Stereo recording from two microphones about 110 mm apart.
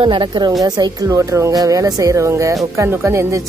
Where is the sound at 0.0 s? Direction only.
45° right (ahead or behind).